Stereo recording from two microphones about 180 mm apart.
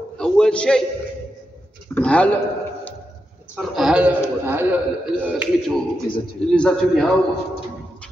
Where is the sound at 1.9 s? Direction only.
5° left (ahead or behind).